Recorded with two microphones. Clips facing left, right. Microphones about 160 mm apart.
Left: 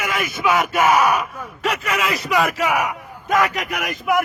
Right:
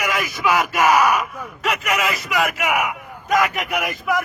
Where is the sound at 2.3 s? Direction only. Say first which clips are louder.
Left 3 dB; 30° left (ahead or behind).